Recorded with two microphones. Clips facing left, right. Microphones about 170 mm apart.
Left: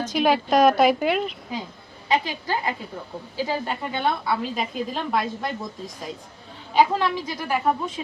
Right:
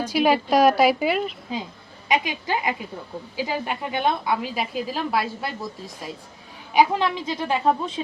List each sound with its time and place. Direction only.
0.0 s a woman's voice: 10° right (ahead or behind)
2.0 s a woman's voice: 15° right (ahead or behind)
6.7 s a woman's voice: 20° right (ahead or behind)